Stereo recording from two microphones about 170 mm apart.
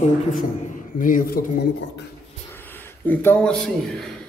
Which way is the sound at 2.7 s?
10° left (ahead or behind).